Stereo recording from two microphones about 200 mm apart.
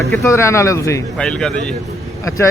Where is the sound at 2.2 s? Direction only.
15° left (ahead or behind).